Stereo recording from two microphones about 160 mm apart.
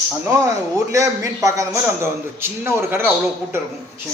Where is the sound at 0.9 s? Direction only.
20° right (ahead or behind).